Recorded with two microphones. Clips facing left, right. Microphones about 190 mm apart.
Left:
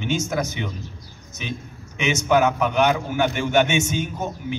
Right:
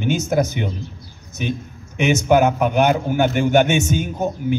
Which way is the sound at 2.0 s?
50° right (ahead or behind).